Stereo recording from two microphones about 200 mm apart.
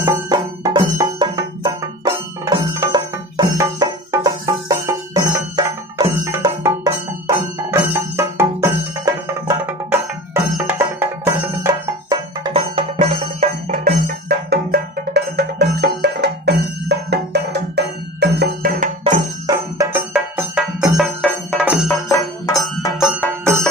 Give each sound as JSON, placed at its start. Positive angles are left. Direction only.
{"t": 0.0, "sound": "music", "side_deg": -20}
{"t": 13.7, "sound": "music", "side_deg": -45}
{"t": 19.4, "sound": "music", "side_deg": -15}
{"t": 20.1, "sound": "music", "side_deg": -5}
{"t": 22.5, "sound": "music", "side_deg": 15}